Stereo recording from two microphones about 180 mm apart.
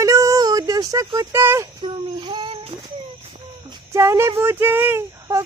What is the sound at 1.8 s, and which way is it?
Speech, 25° right (ahead or behind).